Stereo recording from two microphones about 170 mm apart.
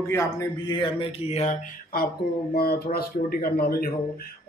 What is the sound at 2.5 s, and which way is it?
Speech, 60° left (ahead or behind).